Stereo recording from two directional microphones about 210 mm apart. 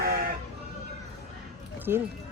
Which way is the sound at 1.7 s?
10° right (ahead or behind).